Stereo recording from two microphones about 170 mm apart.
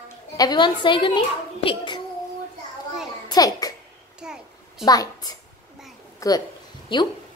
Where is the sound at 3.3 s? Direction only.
20° left (ahead or behind).